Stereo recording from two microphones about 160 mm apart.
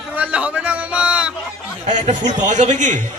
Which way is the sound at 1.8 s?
50° right (ahead or behind).